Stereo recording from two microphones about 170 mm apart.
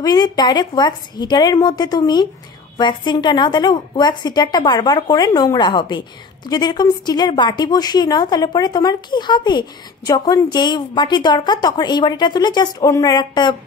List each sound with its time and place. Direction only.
0.0 s a woman's voice: 25° left (ahead or behind)